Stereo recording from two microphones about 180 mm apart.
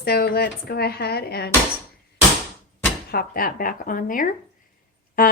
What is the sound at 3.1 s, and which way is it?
A woman's voice, 55° left (ahead or behind).